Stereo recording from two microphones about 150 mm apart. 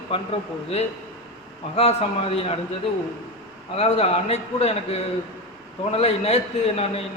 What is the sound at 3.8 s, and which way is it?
A man's voice, 40° left (ahead or behind).